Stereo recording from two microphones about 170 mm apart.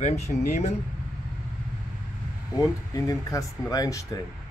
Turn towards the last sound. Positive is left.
turn(degrees=20)  # may be behind; listen again after turning